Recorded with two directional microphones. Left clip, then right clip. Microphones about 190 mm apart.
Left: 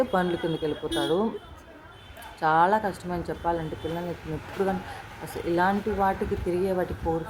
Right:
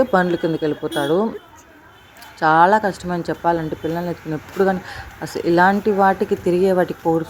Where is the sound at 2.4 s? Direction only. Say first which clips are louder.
Right 8 dB; 30° right (ahead or behind).